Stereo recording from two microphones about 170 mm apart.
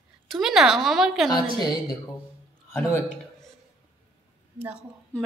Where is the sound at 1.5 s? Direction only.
25° left (ahead or behind).